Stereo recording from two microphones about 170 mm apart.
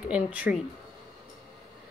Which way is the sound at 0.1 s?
10° right (ahead or behind).